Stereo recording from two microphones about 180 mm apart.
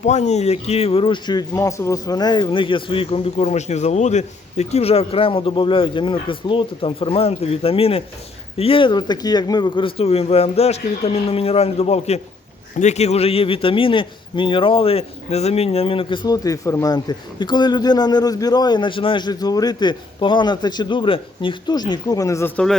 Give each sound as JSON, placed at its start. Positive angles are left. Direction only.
{"t": 0.0, "sound": "a man's voice", "side_deg": 40}